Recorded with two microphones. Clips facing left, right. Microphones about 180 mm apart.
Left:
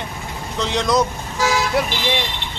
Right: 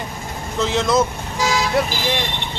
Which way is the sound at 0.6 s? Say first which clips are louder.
Right 1 dB; centre (ahead or behind).